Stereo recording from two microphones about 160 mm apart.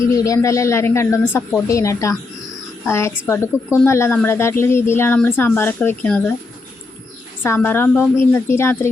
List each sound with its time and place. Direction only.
0.1 s speech: 20° left (ahead or behind)
7.4 s speech: 15° left (ahead or behind)